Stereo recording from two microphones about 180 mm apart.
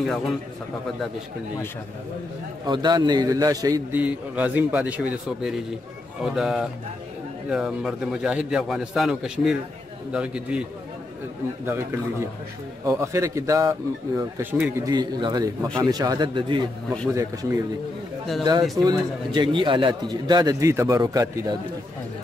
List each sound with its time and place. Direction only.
2.6 s a man's voice: 25° right (ahead or behind)
4.0 s a man's voice: 10° right (ahead or behind)
11.6 s a man's voice: 15° right (ahead or behind)